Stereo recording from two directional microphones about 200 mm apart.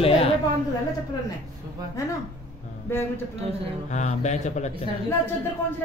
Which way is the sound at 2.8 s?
10° left (ahead or behind).